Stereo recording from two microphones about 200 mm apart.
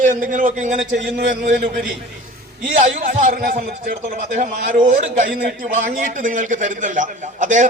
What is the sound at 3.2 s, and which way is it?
A man's voice, 45° right (ahead or behind).